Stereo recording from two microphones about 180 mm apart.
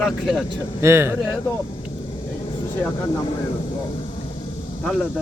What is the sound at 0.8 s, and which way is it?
Speech, 15° right (ahead or behind).